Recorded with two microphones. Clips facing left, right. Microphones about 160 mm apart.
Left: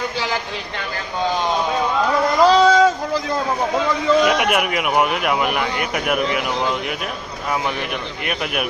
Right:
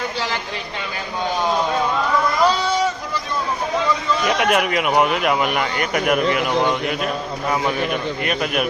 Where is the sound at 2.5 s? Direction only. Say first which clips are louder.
Left 7 dB; 90° left.